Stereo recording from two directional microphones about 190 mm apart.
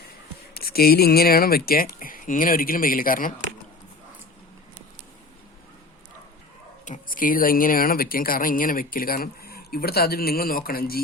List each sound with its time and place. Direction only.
0.5 s speech: 55° left (ahead or behind)
6.8 s speech: 45° left (ahead or behind)